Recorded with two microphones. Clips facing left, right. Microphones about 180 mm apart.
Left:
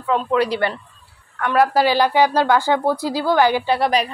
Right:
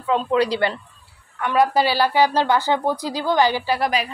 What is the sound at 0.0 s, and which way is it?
Speech, 25° right (ahead or behind).